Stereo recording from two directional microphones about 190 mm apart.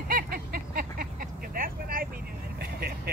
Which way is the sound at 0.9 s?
50° right (ahead or behind).